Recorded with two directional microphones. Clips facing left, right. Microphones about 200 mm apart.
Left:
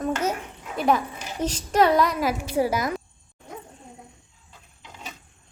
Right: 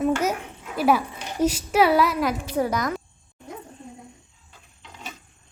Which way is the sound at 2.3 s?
10° left (ahead or behind).